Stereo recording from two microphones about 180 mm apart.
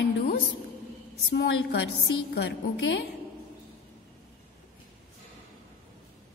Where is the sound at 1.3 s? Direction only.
85° left.